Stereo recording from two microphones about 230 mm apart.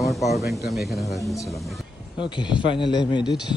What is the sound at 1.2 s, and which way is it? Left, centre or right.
Speech, centre.